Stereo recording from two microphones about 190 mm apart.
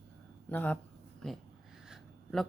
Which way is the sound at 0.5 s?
10° left (ahead or behind).